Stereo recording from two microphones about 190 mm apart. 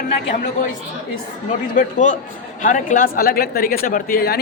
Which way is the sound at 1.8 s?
40° left (ahead or behind).